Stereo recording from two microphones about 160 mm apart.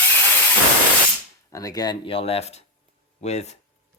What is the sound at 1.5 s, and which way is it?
Speech, 20° left (ahead or behind).